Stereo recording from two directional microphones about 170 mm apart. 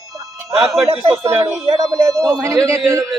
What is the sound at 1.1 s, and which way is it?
Speech, 15° right (ahead or behind).